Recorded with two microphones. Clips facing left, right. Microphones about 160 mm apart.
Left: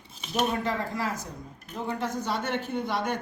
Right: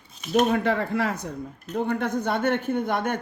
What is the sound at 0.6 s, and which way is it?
Speech, 65° right (ahead or behind).